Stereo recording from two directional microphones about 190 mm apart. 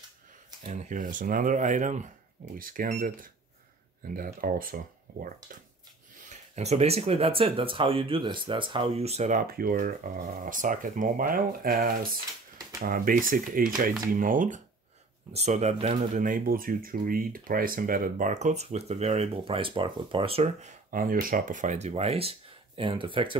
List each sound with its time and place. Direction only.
0.7 s speech: 40° right (ahead or behind)
6.2 s speech: 35° right (ahead or behind)
20.9 s speech: 45° right (ahead or behind); by 23.3 s 25° right (ahead or behind)